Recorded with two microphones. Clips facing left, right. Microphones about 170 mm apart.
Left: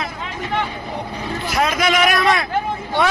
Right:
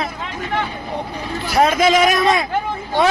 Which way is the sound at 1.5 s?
30° right (ahead or behind).